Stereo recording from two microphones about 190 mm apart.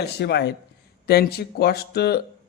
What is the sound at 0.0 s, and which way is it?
A man's voice, 60° left (ahead or behind).